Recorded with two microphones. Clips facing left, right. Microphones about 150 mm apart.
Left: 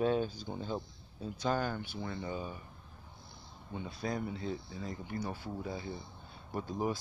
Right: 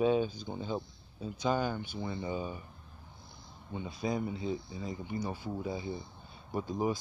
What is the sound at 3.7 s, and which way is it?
Speech, centre (ahead or behind).